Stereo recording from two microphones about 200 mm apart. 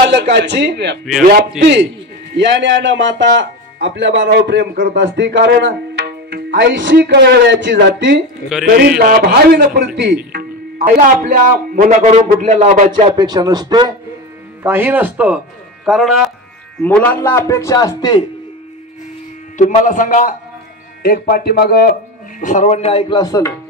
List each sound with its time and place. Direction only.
0.0 s speech: 55° right (ahead or behind)
8.7 s a man's voice: 50° right (ahead or behind)
12.1 s a man's voice: 30° right (ahead or behind)
13.1 s a man's voice: 20° right (ahead or behind); by 18.2 s 20° left (ahead or behind)
19.5 s a man's voice: 40° left (ahead or behind)
22.4 s speech: 40° left (ahead or behind); by 23.5 s 15° left (ahead or behind)